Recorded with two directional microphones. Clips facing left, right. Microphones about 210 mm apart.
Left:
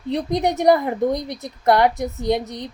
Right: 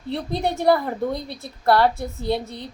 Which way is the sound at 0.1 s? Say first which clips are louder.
Left 4 dB; 15° left (ahead or behind).